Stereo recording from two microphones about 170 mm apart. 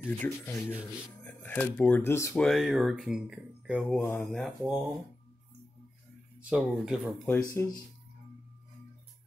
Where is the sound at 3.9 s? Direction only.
10° left (ahead or behind).